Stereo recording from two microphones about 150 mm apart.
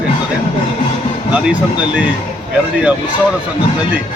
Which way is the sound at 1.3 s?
10° right (ahead or behind).